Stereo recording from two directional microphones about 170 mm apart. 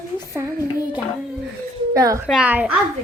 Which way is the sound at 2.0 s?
20° right (ahead or behind).